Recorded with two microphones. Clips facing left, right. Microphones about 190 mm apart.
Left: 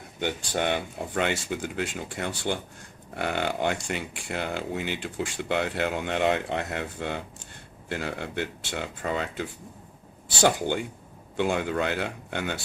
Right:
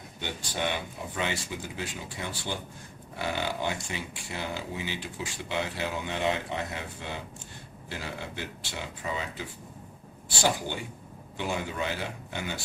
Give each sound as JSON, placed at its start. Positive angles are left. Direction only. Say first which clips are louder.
{"t": 0.2, "sound": "speech", "louder": "left 5 dB", "side_deg": 55}
{"t": 11.3, "sound": "speech", "louder": "left 6 dB", "side_deg": 60}